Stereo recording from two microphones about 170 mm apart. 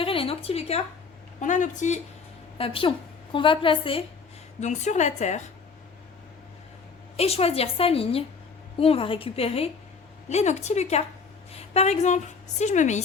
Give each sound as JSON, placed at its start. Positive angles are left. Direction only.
{"t": 0.0, "sound": "a sound", "side_deg": 35}
{"t": 1.4, "sound": "a woman's voice", "side_deg": 45}
{"t": 2.6, "sound": "a woman's voice", "side_deg": 30}
{"t": 4.6, "sound": "a woman's voice", "side_deg": 45}
{"t": 7.2, "sound": "a woman's voice", "side_deg": 35}